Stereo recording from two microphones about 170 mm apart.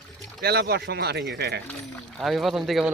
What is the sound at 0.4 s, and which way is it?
Speech, 70° right (ahead or behind).